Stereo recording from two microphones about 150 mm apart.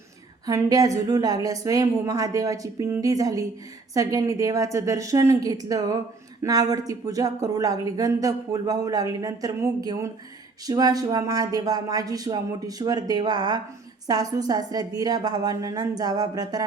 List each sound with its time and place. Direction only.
0.4 s speech: 25° right (ahead or behind)